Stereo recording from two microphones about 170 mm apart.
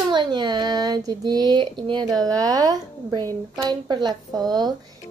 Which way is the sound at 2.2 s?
20° right (ahead or behind).